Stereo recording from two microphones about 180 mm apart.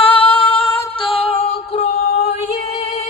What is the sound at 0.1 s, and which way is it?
Female singing, 30° left (ahead or behind).